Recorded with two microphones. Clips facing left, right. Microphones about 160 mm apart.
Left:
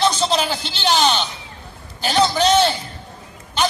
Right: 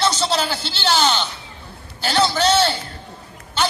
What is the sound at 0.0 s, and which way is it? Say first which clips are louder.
A man's voice: left 2 dB; 15° left (ahead or behind).